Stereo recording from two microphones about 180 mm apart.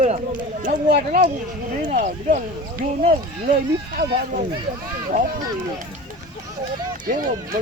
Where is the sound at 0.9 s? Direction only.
45° right (ahead or behind).